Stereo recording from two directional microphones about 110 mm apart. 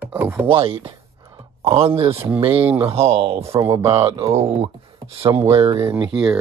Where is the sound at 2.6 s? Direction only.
20° right (ahead or behind).